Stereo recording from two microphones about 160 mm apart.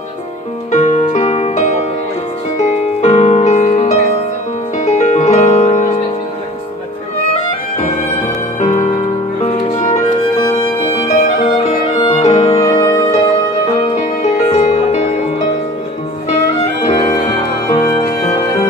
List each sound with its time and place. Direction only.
0.7 s music: 45° left (ahead or behind)
7.8 s music: 50° left (ahead or behind)
11.1 s music: 50° left (ahead or behind)
12.0 s music: 40° left (ahead or behind)
12.6 s music: 20° left (ahead or behind)
13.7 s music: 45° left (ahead or behind)
17.0 s music: 25° left (ahead or behind)